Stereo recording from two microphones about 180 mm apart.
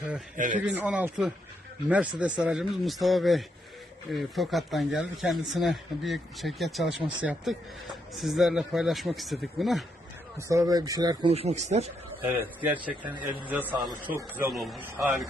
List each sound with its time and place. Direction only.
0.3 s a man's voice: 45° right (ahead or behind)
0.6 s a man's voice: 5° right (ahead or behind)
10.3 s speech: 20° right (ahead or behind)
11.3 s speech: 35° right (ahead or behind)
12.2 s a man's voice: 10° right (ahead or behind)
14.5 s speech: centre (ahead or behind)